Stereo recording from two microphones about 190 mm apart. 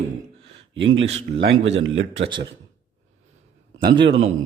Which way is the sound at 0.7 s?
75° right (ahead or behind).